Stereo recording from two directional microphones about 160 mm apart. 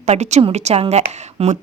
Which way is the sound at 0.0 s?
45° right (ahead or behind).